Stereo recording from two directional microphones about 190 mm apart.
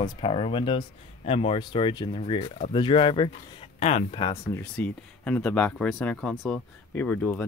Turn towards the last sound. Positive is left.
turn(degrees=10)  # may be behind; listen again after turning